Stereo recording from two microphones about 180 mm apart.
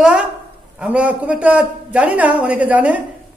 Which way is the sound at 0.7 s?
5° right (ahead or behind).